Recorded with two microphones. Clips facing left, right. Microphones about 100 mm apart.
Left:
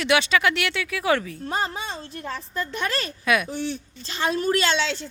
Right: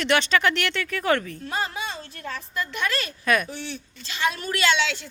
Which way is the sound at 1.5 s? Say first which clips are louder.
Left 1 dB; 35° left (ahead or behind).